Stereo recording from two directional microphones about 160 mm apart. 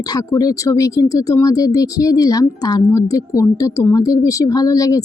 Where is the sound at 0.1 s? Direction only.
25° left (ahead or behind).